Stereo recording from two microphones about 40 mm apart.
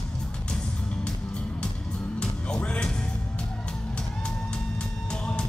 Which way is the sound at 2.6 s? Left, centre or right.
Left.